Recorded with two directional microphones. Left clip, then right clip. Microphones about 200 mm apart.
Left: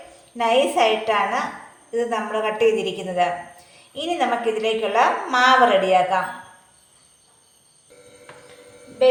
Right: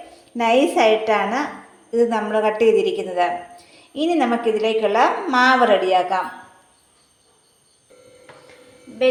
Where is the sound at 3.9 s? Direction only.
45° right (ahead or behind).